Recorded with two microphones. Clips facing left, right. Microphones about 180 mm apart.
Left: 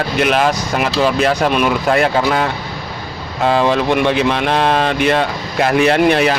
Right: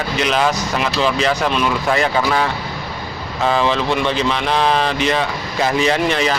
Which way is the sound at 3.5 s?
50° left (ahead or behind).